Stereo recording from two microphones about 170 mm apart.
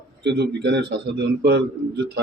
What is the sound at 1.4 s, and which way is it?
Speech, 70° right (ahead or behind).